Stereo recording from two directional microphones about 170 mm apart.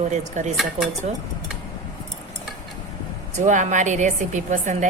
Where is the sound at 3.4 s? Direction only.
45° right (ahead or behind).